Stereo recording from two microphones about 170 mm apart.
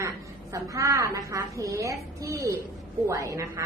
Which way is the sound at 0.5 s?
20° right (ahead or behind).